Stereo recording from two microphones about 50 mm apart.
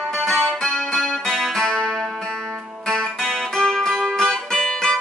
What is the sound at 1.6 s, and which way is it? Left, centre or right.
Music, centre.